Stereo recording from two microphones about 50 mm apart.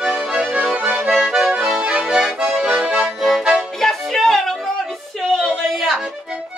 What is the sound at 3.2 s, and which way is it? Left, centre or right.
Accordion, centre.